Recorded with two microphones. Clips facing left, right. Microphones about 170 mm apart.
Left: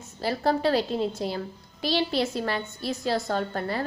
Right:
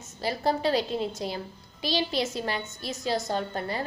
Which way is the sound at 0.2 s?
20° right (ahead or behind).